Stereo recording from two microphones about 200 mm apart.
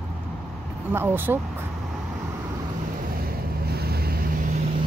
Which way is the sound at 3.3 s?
50° right (ahead or behind).